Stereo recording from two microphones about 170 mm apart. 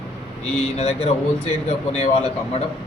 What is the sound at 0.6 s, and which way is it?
Speech, 40° left (ahead or behind).